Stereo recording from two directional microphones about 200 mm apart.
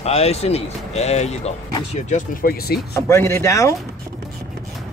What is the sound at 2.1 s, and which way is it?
Speech, 45° left (ahead or behind).